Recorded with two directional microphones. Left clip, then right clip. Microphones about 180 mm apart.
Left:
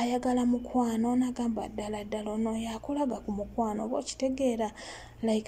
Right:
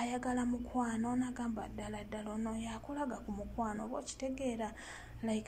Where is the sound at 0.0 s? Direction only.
30° left (ahead or behind).